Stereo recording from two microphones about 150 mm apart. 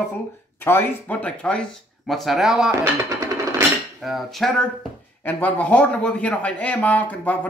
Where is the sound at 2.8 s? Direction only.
20° right (ahead or behind).